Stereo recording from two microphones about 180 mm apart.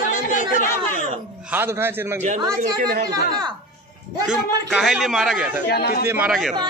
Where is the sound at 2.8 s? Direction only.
55° right (ahead or behind).